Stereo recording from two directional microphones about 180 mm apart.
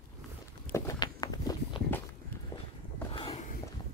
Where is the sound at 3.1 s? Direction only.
30° left (ahead or behind).